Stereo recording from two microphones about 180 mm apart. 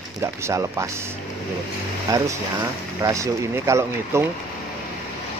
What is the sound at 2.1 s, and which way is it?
Speech, 20° right (ahead or behind).